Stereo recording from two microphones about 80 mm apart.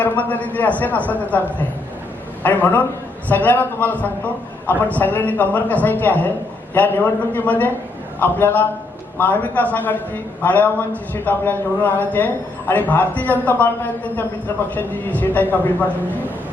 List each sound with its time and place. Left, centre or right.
0.0 s a man's voice: left